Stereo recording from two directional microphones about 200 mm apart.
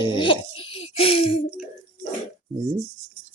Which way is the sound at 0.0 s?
25° left (ahead or behind).